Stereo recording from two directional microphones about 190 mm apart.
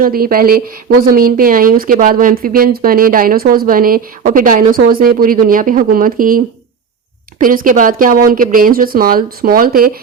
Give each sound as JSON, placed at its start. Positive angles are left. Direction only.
{"t": 0.0, "sound": "speech", "side_deg": -50}